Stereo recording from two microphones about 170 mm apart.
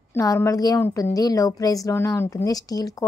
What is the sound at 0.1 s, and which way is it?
Speech, 15° left (ahead or behind).